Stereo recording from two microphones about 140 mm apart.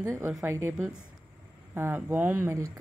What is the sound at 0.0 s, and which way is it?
A woman's voice, 20° right (ahead or behind).